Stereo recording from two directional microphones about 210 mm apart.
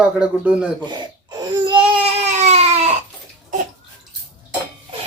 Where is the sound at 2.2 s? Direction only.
30° right (ahead or behind).